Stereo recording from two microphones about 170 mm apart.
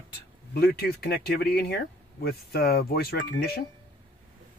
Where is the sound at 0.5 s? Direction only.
70° left (ahead or behind).